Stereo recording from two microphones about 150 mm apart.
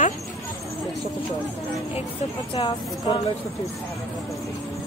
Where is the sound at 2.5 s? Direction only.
35° left (ahead or behind).